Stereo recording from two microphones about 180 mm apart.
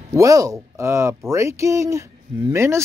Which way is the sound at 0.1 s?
15° right (ahead or behind).